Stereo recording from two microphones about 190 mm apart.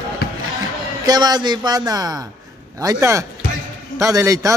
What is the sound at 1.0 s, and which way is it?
A man's voice, 20° right (ahead or behind).